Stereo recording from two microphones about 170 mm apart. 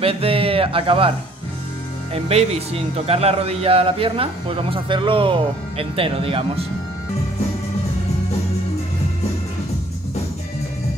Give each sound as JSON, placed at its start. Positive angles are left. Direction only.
{"t": 0.0, "sound": "speech", "side_deg": -35}
{"t": 2.1, "sound": "speech", "side_deg": -35}